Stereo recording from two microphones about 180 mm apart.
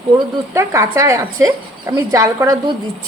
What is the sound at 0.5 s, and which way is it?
A woman's voice, 15° right (ahead or behind).